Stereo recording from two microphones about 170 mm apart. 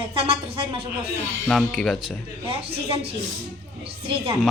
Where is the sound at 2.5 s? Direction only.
35° right (ahead or behind).